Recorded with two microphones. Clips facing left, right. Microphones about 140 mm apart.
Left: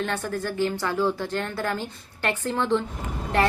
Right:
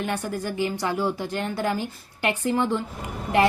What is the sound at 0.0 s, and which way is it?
A woman's voice, 15° right (ahead or behind).